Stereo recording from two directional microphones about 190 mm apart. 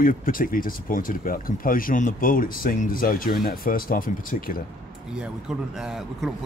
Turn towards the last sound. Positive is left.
turn(degrees=0)  # may be behind; listen again after turning